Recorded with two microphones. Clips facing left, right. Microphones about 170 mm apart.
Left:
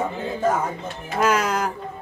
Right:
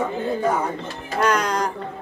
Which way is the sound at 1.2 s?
5° left (ahead or behind).